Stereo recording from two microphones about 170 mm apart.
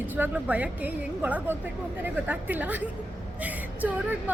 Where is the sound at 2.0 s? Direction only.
10° right (ahead or behind).